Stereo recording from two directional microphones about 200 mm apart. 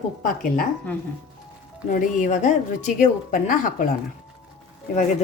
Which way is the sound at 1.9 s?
40° left (ahead or behind).